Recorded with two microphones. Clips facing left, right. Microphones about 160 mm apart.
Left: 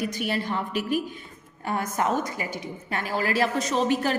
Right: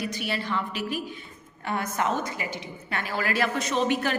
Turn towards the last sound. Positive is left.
turn(degrees=35)  # may be behind; listen again after turning